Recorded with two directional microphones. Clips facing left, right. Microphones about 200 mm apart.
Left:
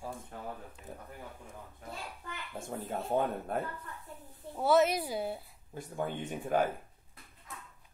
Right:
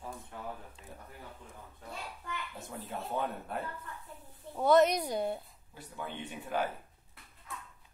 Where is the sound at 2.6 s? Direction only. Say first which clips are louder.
Left 4 dB; 50° left (ahead or behind).